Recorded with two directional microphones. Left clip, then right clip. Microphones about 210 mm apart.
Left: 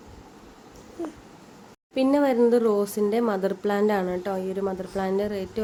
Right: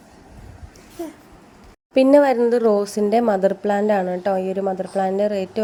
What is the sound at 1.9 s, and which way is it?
A woman's voice, 30° right (ahead or behind).